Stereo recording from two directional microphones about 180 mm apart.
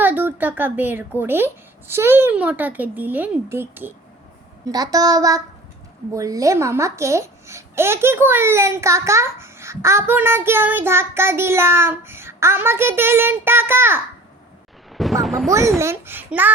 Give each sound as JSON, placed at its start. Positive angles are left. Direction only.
{"t": 0.0, "sound": "a child's voice", "side_deg": -10}
{"t": 15.2, "sound": "speech", "side_deg": 0}
{"t": 15.8, "sound": "a child's voice", "side_deg": -15}